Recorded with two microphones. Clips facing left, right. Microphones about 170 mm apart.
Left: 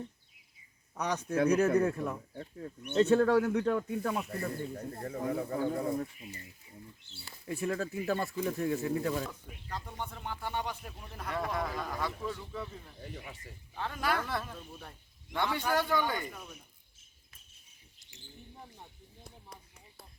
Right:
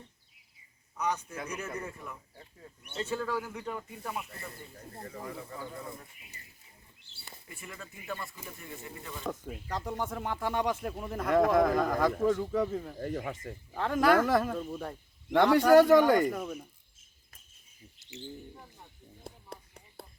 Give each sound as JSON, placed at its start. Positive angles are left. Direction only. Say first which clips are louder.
{"t": 0.9, "sound": "speech", "louder": "left 4 dB", "side_deg": 75}
{"t": 7.4, "sound": "speech", "louder": "left 14 dB", "side_deg": 85}
{"t": 9.5, "sound": "speech", "louder": "right 7 dB", "side_deg": -75}
{"t": 10.8, "sound": "speech", "louder": "right 10 dB", "side_deg": -50}
{"t": 12.5, "sound": "speech", "louder": "right 12 dB", "side_deg": -65}
{"t": 13.3, "sound": "speech", "louder": "right 10 dB", "side_deg": -45}
{"t": 13.7, "sound": "speech", "louder": "right 9 dB", "side_deg": -75}
{"t": 14.3, "sound": "speech", "louder": "right 10 dB", "side_deg": -50}
{"t": 14.6, "sound": "speech", "louder": "right 11 dB", "side_deg": -80}
{"t": 15.8, "sound": "speech", "louder": "right 11 dB", "side_deg": -40}
{"t": 16.0, "sound": "speech", "louder": "right 11 dB", "side_deg": -75}
{"t": 19.2, "sound": "a sound", "louder": "right 6 dB", "side_deg": -60}